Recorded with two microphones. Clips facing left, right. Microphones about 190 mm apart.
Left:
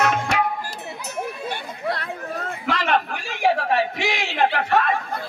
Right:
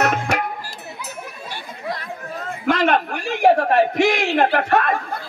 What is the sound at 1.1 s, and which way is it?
Chatter, 65° left (ahead or behind).